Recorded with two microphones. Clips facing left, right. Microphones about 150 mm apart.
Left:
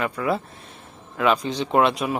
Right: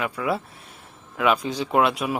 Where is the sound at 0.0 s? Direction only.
5° right (ahead or behind).